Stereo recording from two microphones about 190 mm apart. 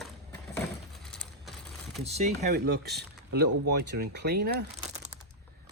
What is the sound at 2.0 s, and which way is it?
Speech, 35° right (ahead or behind).